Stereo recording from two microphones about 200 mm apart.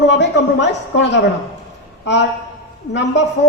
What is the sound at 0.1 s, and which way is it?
A man's voice, 60° left (ahead or behind).